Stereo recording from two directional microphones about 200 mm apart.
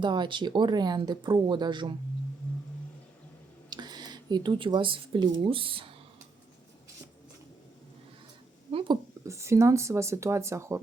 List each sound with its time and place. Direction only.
0.0 s speech: 20° right (ahead or behind)
3.7 s speech: 20° right (ahead or behind)
8.7 s speech: 20° right (ahead or behind)